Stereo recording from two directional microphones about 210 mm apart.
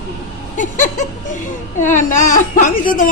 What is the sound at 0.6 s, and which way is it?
Chuckle, 35° left (ahead or behind).